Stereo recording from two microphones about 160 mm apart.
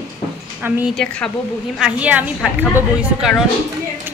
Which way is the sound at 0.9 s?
5° left (ahead or behind).